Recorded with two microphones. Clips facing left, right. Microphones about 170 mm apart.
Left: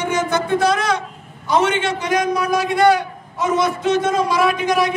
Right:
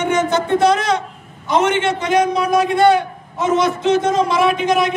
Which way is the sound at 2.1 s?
25° right (ahead or behind).